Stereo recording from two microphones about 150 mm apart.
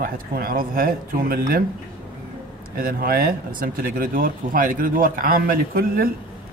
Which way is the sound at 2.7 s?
75° right (ahead or behind).